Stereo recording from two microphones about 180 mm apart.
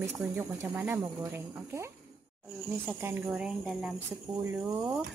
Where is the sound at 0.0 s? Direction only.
15° right (ahead or behind).